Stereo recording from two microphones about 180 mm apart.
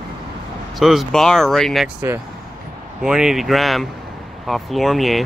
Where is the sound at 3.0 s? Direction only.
5° right (ahead or behind).